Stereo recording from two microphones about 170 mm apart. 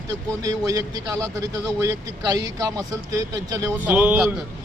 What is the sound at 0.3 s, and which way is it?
A man's voice, 20° right (ahead or behind).